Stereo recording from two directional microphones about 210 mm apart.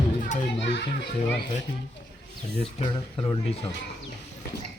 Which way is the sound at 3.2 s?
20° left (ahead or behind).